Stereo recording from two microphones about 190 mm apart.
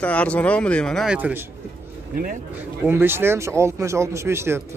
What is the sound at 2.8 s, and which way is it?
Speech, 10° right (ahead or behind).